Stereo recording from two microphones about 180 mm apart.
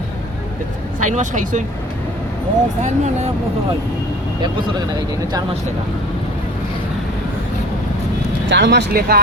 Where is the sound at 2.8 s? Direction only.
40° right (ahead or behind).